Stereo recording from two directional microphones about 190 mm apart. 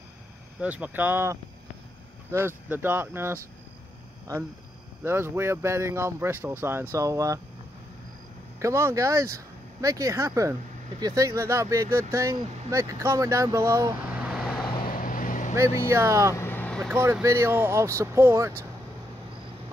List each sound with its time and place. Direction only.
0.6 s speech: 10° right (ahead or behind)
5.0 s speech: 10° right (ahead or behind)
8.5 s speech: 15° right (ahead or behind)
14.9 s vehicle: 45° left (ahead or behind)
15.9 s speech: 15° right (ahead or behind)
16.3 s vehicle: 10° left (ahead or behind)
16.9 s speech: 10° right (ahead or behind)